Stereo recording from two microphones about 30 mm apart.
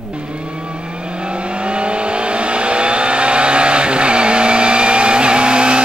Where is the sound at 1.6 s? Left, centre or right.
Right.